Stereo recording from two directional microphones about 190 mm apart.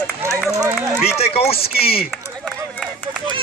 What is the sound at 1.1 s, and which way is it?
Speech, 30° left (ahead or behind).